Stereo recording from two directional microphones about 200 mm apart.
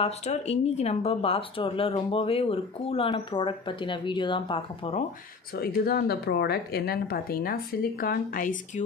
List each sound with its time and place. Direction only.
0.0 s speech: 35° left (ahead or behind)
5.6 s speech: 50° left (ahead or behind)